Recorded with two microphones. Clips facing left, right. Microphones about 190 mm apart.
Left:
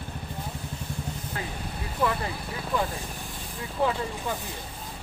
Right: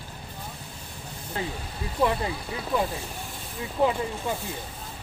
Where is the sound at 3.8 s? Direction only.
20° right (ahead or behind).